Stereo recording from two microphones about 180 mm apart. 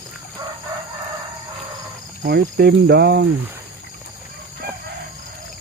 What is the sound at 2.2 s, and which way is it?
Speech, 60° right (ahead or behind).